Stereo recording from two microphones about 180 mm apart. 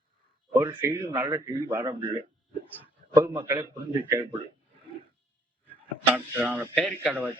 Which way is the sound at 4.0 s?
10° right (ahead or behind).